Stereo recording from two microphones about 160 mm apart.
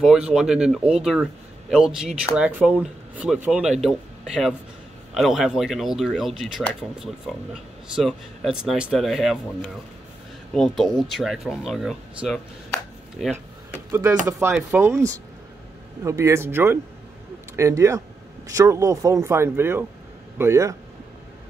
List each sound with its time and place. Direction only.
0.0 s speech: 5° right (ahead or behind)
13.9 s speech: 10° right (ahead or behind)